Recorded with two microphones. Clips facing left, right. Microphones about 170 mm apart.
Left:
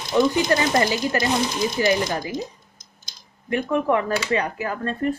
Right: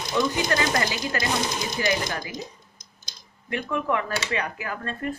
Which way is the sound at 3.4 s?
30° left (ahead or behind).